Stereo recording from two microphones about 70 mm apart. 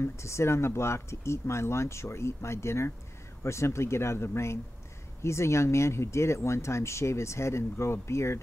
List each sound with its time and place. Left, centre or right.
0.0 s speech: left